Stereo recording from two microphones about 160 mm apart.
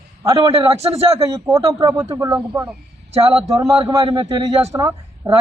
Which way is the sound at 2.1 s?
20° right (ahead or behind).